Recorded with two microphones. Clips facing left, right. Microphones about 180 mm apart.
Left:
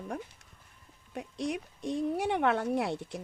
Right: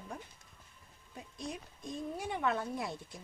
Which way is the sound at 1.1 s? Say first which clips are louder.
Left 9 dB; 80° left.